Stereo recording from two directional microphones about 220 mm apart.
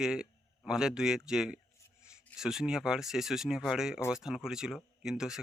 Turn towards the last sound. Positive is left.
turn(degrees=0)  # may be behind; listen again after turning